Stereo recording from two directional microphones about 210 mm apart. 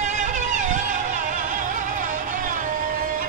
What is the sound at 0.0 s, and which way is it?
Music, 35° right (ahead or behind).